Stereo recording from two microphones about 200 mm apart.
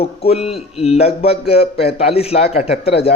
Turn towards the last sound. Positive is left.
turn(degrees=30)  # may be behind; listen again after turning